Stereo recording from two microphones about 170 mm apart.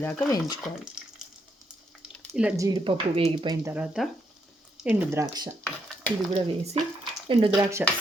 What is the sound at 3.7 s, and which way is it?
Speech, 5° right (ahead or behind).